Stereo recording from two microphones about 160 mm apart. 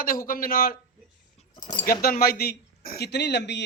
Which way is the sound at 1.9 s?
65° left (ahead or behind).